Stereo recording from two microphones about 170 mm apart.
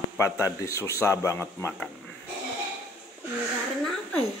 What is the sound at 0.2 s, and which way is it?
A man's voice, 15° left (ahead or behind).